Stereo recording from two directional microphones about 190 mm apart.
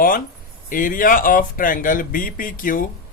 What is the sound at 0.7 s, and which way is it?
A man's voice, 45° left (ahead or behind).